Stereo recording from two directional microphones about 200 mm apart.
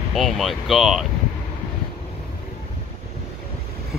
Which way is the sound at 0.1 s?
Centre (ahead or behind).